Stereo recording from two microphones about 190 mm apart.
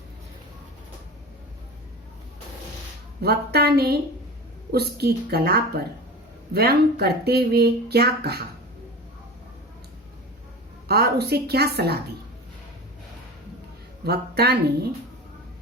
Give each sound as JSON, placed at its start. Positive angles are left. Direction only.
{"t": 3.2, "sound": "speech", "side_deg": -55}
{"t": 10.8, "sound": "speech", "side_deg": -55}
{"t": 14.0, "sound": "speech", "side_deg": -55}